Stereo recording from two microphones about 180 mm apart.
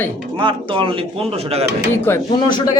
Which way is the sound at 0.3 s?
25° right (ahead or behind).